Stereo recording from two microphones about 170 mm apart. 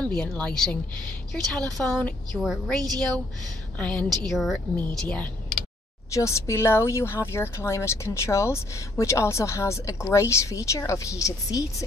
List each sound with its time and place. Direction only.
0.1 s speech: 5° left (ahead or behind)
6.1 s speech: 20° left (ahead or behind)